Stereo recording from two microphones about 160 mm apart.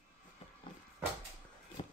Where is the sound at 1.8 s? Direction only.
35° left (ahead or behind).